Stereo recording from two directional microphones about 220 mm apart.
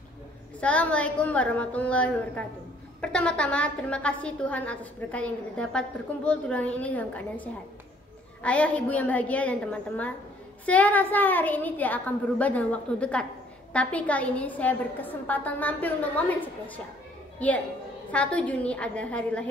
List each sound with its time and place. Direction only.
0.6 s a woman's voice: 5° left (ahead or behind)
17.4 s a woman's voice: 5° left (ahead or behind)